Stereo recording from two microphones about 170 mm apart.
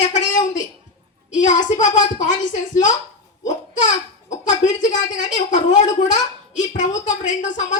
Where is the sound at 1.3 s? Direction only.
45° left (ahead or behind).